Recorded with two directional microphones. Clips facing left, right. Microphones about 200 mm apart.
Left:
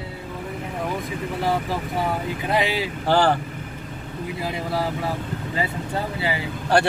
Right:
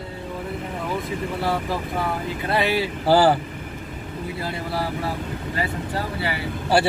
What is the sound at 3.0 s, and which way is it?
Speech, 5° right (ahead or behind).